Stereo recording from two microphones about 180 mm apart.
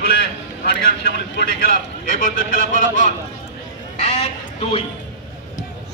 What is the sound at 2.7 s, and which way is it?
Speech, 45° left (ahead or behind).